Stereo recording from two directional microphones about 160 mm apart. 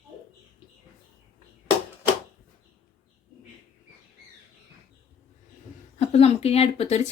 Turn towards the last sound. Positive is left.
turn(degrees=45)  # may be behind; listen again after turning